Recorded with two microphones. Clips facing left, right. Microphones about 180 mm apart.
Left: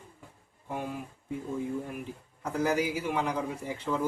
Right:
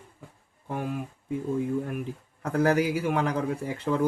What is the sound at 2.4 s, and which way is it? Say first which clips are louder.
Speech: right 5 dB; 65° right (ahead or behind).